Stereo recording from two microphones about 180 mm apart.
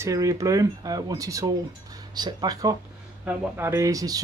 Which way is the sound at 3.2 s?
10° right (ahead or behind).